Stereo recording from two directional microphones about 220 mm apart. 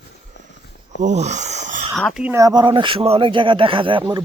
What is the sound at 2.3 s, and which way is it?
Speech, 15° right (ahead or behind).